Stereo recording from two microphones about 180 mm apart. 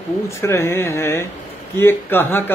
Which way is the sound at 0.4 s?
15° left (ahead or behind).